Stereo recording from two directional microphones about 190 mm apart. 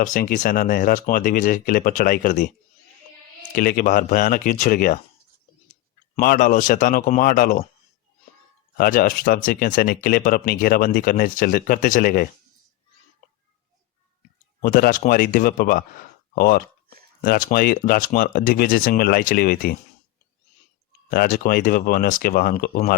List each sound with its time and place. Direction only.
0.0 s speech: 45° left (ahead or behind)
3.5 s speech: 50° left (ahead or behind)
6.1 s speech: 45° left (ahead or behind)
8.8 s speech: 50° left (ahead or behind)
14.2 s speech: 50° left (ahead or behind)
21.1 s speech: 50° left (ahead or behind)